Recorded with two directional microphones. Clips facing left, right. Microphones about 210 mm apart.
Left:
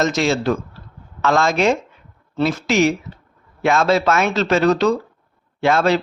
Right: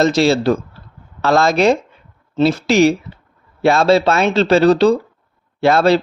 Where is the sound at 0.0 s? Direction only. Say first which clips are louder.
Right 5 dB; 35° right (ahead or behind).